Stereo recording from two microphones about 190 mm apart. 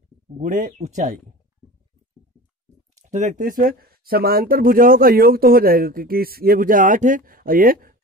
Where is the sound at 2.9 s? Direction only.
40° right (ahead or behind).